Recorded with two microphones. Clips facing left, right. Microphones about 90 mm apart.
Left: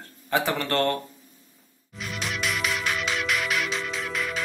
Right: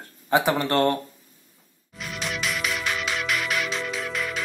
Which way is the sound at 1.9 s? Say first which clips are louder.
Even; centre (ahead or behind).